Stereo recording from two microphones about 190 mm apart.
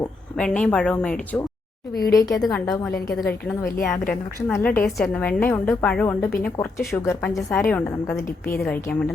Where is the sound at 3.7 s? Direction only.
45° left (ahead or behind).